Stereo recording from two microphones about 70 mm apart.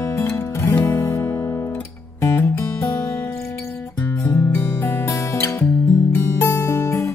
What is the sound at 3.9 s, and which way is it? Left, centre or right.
Music, left.